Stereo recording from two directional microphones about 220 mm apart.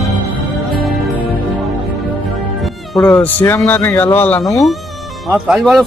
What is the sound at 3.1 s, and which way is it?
Speech, 10° left (ahead or behind).